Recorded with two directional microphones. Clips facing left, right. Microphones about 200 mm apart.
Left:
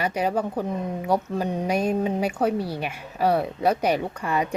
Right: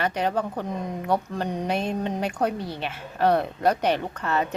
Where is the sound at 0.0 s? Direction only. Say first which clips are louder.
Left 1 dB; 10° left (ahead or behind).